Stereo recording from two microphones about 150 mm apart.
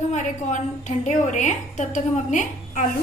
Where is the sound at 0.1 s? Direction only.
55° left (ahead or behind).